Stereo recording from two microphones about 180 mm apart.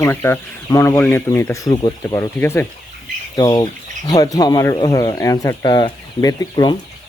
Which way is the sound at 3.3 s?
25° left (ahead or behind).